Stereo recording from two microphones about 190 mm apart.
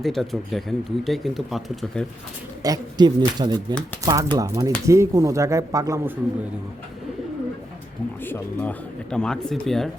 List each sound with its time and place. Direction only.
0.0 s speech: centre (ahead or behind)
2.6 s speech: 20° right (ahead or behind)
8.2 s speech: 10° left (ahead or behind)